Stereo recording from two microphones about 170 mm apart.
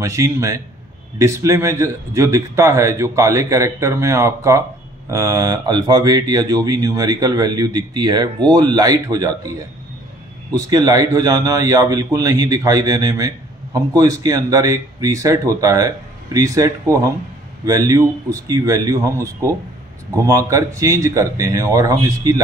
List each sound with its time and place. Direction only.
0.0 s a man's voice: 20° right (ahead or behind)
10.5 s speech: 20° right (ahead or behind)